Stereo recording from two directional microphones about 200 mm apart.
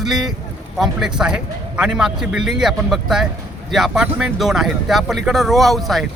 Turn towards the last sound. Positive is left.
turn(degrees=0)  # may be behind; listen again after turning